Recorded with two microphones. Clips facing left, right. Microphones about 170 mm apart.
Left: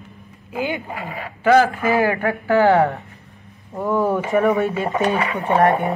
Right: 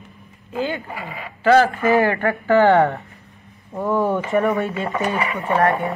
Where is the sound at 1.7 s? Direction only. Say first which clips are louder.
Right 1 dB; centre (ahead or behind).